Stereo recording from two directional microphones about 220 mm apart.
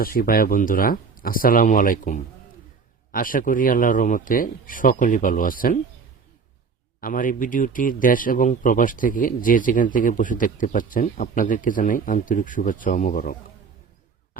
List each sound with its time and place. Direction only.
0.0 s speech: 40° left (ahead or behind)
7.0 s speech: 40° left (ahead or behind)